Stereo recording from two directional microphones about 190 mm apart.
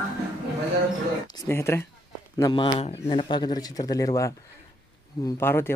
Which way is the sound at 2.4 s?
25° left (ahead or behind).